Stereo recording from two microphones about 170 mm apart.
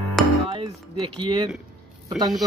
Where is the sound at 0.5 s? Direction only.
30° right (ahead or behind).